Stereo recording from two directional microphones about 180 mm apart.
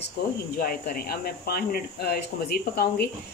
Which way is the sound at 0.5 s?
55° left (ahead or behind).